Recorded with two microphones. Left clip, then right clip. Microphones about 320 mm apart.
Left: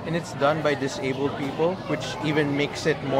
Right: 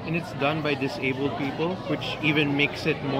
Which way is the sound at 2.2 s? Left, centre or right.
Centre.